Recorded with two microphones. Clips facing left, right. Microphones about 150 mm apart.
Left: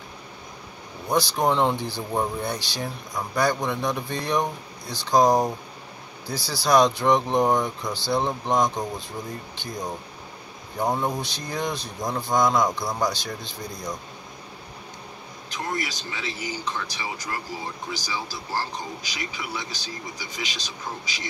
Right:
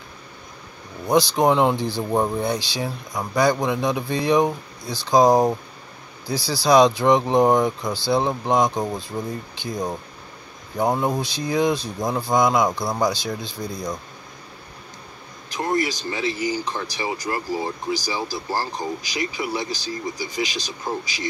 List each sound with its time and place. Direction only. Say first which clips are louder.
1.3 s speech: right 4 dB; 10° right (ahead or behind)
15.5 s speech: right 7 dB; 35° right (ahead or behind)